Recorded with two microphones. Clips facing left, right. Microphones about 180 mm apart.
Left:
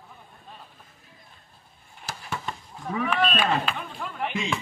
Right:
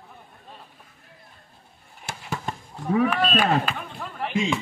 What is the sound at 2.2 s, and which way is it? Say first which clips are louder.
Chop: right 3 dB; 40° right (ahead or behind).